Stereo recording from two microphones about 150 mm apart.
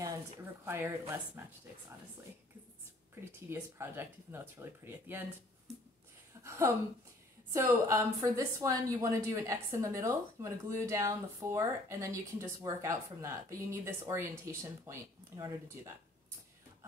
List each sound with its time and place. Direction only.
0.0 s a woman's voice: 20° right (ahead or behind)
3.3 s speech: 15° right (ahead or behind)
6.4 s speech: 20° right (ahead or behind)